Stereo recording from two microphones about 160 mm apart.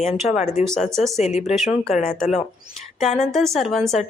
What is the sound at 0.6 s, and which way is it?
Speech, 45° left (ahead or behind).